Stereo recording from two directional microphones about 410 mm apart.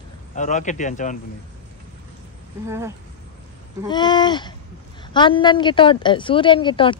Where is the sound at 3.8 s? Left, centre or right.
Centre.